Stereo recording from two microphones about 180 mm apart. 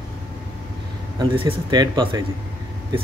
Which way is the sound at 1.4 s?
25° right (ahead or behind).